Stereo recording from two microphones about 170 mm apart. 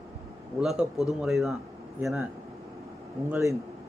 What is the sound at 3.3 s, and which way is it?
Speech, 15° right (ahead or behind).